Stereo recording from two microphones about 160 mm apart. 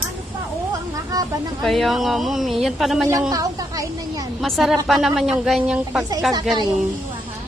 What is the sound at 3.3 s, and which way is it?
Speech, 25° right (ahead or behind).